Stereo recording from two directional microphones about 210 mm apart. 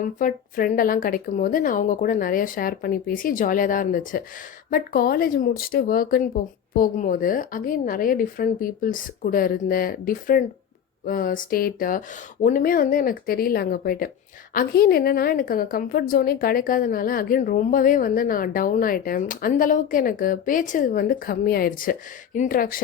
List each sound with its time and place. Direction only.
0.0 s a woman's voice: 40° left (ahead or behind)